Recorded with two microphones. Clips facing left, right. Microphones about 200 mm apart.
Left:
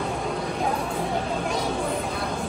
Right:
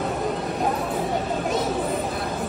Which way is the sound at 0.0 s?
5° right (ahead or behind).